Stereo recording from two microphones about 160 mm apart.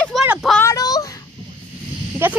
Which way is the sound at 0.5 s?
20° left (ahead or behind).